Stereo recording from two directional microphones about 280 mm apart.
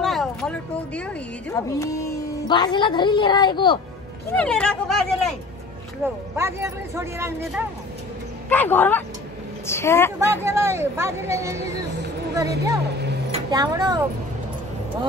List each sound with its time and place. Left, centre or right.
0.0 s speech: centre
4.4 s speech: centre
6.3 s speech: centre
8.5 s speech: centre
10.1 s speech: centre
12.8 s speech: right
13.3 s speech: centre